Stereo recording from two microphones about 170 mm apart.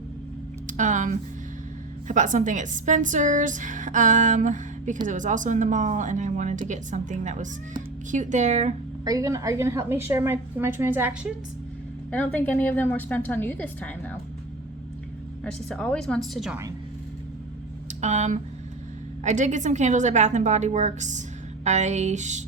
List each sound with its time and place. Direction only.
0.7 s a woman's voice: 45° right (ahead or behind)
9.0 s a woman's voice: 20° right (ahead or behind)
12.1 s a woman's voice: 10° left (ahead or behind)
15.4 s a woman's voice: 5° left (ahead or behind)
18.0 s a woman's voice: 45° right (ahead or behind)